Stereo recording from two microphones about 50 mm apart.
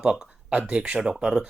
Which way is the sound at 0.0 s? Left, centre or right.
Centre.